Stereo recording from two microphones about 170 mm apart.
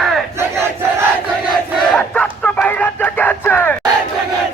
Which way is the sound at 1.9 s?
5° left (ahead or behind).